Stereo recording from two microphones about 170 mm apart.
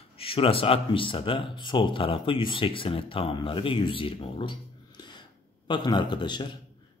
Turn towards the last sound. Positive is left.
turn(degrees=25)  # may be behind; listen again after turning